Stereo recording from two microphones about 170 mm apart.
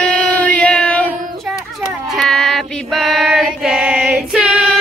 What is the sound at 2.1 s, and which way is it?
Female singing, centre (ahead or behind).